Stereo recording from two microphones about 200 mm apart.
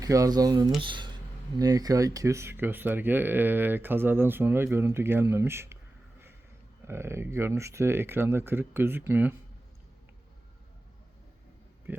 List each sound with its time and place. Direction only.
0.0 s speech: 15° right (ahead or behind)
6.8 s speech: 10° right (ahead or behind)
11.9 s speech: 10° right (ahead or behind)